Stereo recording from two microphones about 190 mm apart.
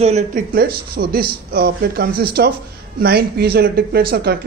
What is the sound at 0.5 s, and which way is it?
A man's voice, 55° right (ahead or behind).